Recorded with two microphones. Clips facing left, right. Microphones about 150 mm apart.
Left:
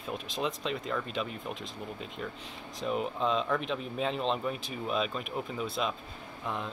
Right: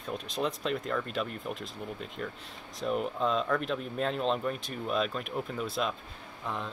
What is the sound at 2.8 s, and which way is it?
Speech, centre (ahead or behind).